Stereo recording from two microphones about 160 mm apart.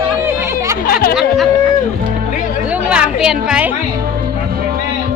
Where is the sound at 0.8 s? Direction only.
70° left (ahead or behind).